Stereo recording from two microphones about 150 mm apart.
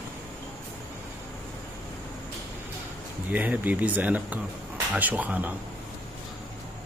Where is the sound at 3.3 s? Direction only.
10° right (ahead or behind).